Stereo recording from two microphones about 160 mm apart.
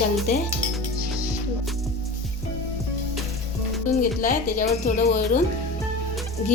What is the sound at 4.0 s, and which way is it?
Speech, 60° left (ahead or behind).